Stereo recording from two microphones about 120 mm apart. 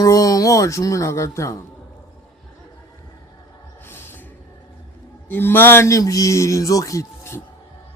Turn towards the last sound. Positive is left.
turn(degrees=25)  # may be behind; listen again after turning